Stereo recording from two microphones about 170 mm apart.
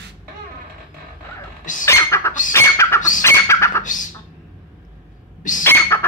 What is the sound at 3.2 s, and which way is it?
Bird, 15° left (ahead or behind).